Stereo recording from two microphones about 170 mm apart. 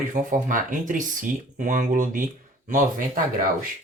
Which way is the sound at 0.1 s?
50° right (ahead or behind).